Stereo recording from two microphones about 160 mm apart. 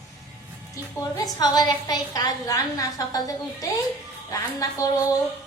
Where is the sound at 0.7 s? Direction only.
20° left (ahead or behind).